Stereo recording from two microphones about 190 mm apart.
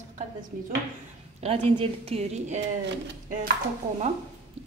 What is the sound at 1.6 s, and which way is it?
Speech, 30° right (ahead or behind).